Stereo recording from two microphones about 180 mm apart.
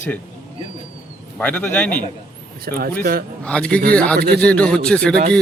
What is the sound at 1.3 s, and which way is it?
Speech, 10° left (ahead or behind).